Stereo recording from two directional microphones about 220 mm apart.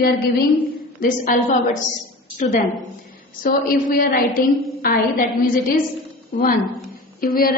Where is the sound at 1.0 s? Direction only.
40° left (ahead or behind).